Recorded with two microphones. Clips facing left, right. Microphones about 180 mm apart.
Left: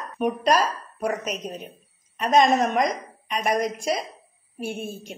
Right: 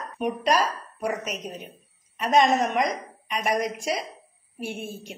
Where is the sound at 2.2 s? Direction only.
45° left (ahead or behind).